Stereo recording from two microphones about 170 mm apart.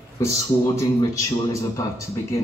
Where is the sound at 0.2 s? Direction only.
15° left (ahead or behind).